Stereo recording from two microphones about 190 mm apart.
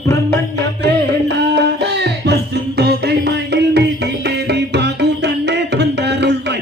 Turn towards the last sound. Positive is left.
turn(degrees=-65)  # may be behind; listen again after turning